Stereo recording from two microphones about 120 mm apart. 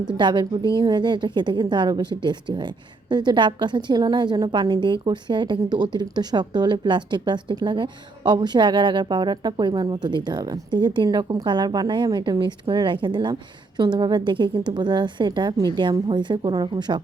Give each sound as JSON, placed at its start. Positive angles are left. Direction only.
{"t": 0.1, "sound": "a woman's voice", "side_deg": -40}